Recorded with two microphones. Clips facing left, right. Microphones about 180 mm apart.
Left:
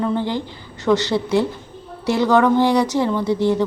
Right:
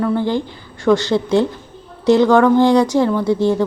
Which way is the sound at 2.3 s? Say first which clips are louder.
Right 3 dB; 10° left (ahead or behind).